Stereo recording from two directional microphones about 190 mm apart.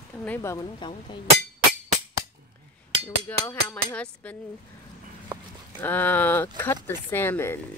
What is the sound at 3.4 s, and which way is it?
Dishes, 10° left (ahead or behind).